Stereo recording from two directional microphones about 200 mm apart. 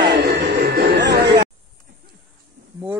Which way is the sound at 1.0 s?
60° right (ahead or behind).